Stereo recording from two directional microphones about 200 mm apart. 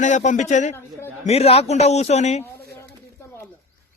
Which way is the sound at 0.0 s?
40° left (ahead or behind).